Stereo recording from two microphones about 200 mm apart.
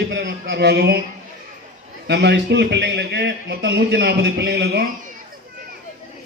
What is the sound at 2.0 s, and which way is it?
A man's voice, 55° right (ahead or behind).